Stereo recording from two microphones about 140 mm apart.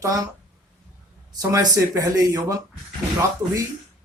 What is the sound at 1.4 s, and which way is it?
Speech, 25° right (ahead or behind).